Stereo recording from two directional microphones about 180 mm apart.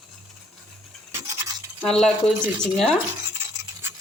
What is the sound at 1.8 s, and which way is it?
Speech, centre (ahead or behind).